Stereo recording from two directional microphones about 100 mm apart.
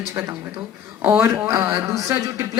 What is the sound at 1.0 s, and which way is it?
Speech, 20° right (ahead or behind).